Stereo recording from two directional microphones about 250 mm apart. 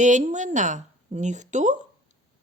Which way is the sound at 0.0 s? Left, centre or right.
Right.